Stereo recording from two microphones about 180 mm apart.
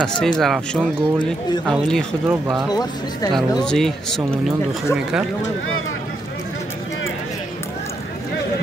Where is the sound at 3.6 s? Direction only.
5° left (ahead or behind).